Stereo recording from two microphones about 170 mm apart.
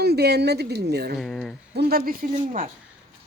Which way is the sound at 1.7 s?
70° right (ahead or behind).